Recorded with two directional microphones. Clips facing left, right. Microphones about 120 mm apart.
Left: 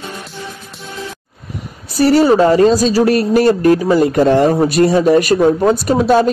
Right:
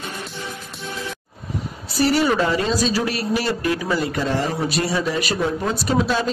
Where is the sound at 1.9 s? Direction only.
40° left (ahead or behind).